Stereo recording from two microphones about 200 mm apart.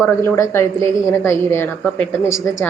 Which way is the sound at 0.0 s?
15° left (ahead or behind).